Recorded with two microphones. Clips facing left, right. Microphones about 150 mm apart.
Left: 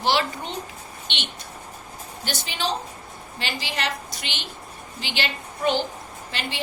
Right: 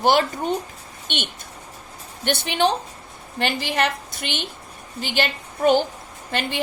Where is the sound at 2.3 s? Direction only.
60° right (ahead or behind).